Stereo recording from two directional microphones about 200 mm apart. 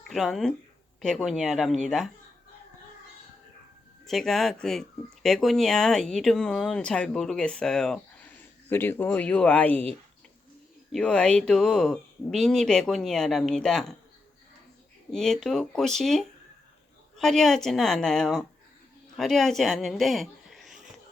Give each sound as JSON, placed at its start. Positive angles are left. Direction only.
{"t": 0.1, "sound": "speech", "side_deg": 0}
{"t": 4.0, "sound": "speech", "side_deg": 0}
{"t": 10.9, "sound": "speech", "side_deg": 5}
{"t": 15.1, "sound": "speech", "side_deg": 0}